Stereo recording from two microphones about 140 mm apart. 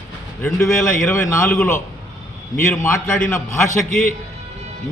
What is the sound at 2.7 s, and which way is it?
Speech, 20° left (ahead or behind).